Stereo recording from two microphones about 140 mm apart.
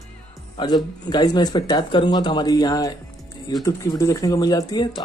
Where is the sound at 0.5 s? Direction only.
30° left (ahead or behind).